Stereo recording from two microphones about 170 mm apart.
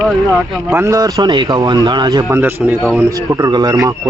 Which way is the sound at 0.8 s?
20° right (ahead or behind).